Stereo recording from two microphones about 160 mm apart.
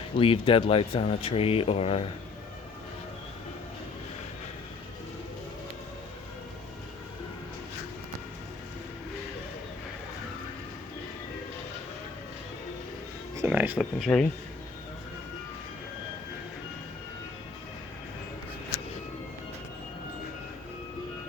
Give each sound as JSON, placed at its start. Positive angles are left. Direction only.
{"t": 0.2, "sound": "speech", "side_deg": 35}
{"t": 13.5, "sound": "speech", "side_deg": -10}